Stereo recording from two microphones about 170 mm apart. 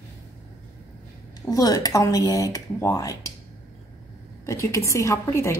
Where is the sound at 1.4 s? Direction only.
20° left (ahead or behind).